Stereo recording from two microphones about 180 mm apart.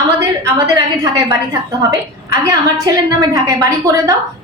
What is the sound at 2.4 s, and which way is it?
A woman's voice, 20° right (ahead or behind).